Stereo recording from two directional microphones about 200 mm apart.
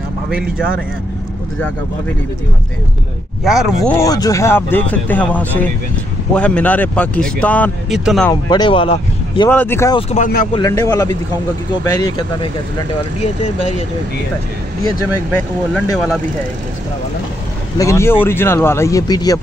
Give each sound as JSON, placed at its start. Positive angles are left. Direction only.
{"t": 3.4, "sound": "speech", "side_deg": 0}
{"t": 4.0, "sound": "speech", "side_deg": 15}
{"t": 8.3, "sound": "speech", "side_deg": 20}
{"t": 9.5, "sound": "speech", "side_deg": 10}
{"t": 9.9, "sound": "speech", "side_deg": 40}
{"t": 10.5, "sound": "speech", "side_deg": 15}
{"t": 15.1, "sound": "speech", "side_deg": 5}
{"t": 17.7, "sound": "speech", "side_deg": 15}